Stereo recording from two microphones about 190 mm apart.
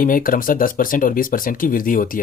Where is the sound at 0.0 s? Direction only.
45° left (ahead or behind).